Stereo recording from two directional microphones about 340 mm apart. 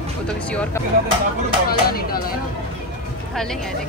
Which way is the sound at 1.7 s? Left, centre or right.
Left.